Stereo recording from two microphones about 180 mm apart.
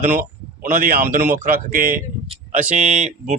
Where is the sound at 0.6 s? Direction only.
50° right (ahead or behind).